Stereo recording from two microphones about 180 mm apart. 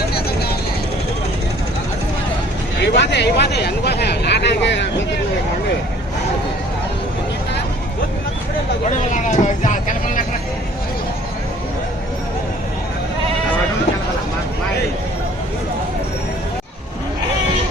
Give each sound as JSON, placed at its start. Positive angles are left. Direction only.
{"t": 0.1, "sound": "vehicle", "side_deg": 60}
{"t": 2.8, "sound": "a sound", "side_deg": 70}
{"t": 8.9, "sound": "vehicle", "side_deg": 45}